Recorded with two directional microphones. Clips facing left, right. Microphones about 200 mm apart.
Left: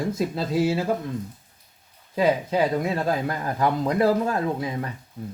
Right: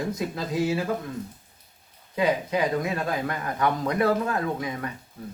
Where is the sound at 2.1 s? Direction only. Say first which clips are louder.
Left 3 dB; 30° left (ahead or behind).